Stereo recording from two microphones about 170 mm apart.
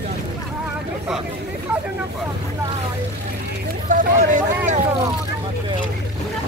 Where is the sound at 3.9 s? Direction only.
50° right (ahead or behind).